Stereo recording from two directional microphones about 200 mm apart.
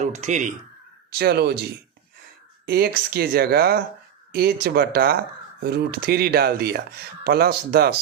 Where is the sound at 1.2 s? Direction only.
55° right (ahead or behind).